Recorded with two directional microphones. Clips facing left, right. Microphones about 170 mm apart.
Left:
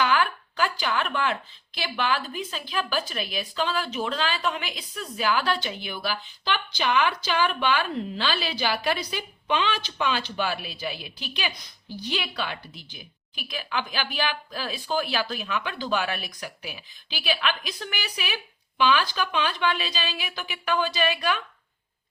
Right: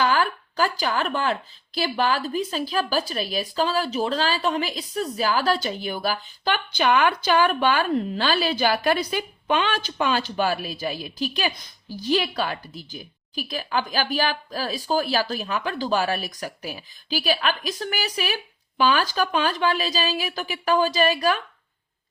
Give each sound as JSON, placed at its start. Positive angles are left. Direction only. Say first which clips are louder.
{"t": 0.0, "sound": "speech", "louder": "right 2 dB", "side_deg": -40}